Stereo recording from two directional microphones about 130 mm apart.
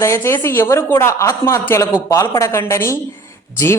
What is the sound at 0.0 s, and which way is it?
A woman's voice, 20° left (ahead or behind).